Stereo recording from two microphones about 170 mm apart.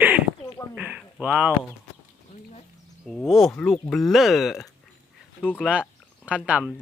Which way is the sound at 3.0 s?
Centre (ahead or behind).